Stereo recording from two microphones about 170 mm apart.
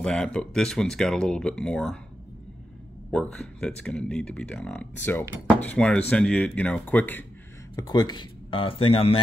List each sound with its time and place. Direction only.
0.0 s speech: 5° left (ahead or behind)
3.1 s speech: 5° left (ahead or behind)
7.7 s speech: 25° left (ahead or behind)